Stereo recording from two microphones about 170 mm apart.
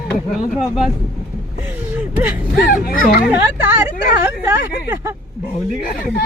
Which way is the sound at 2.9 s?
55° left (ahead or behind).